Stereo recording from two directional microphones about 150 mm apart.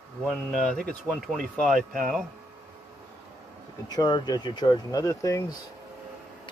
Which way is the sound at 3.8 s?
30° left (ahead or behind).